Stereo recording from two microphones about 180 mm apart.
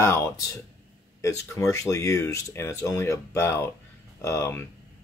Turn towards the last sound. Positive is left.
turn(degrees=15)  # may be behind; listen again after turning